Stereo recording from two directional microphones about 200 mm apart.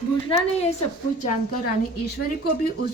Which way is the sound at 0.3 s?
25° left (ahead or behind).